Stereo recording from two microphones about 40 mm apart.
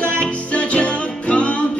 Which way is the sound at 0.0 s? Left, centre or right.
Left.